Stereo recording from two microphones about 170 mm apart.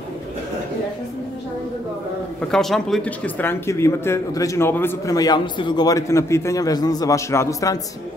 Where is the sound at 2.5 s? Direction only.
Centre (ahead or behind); by 7.8 s 20° left (ahead or behind).